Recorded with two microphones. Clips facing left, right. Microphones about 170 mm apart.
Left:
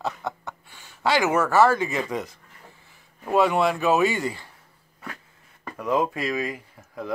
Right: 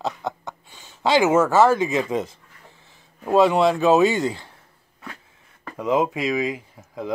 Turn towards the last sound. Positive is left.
turn(degrees=-20)  # may be behind; listen again after turning